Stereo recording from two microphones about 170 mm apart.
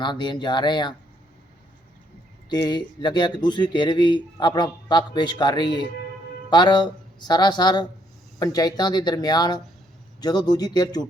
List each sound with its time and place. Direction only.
0.0 s speech: 25° left (ahead or behind)
2.5 s speech: 25° left (ahead or behind)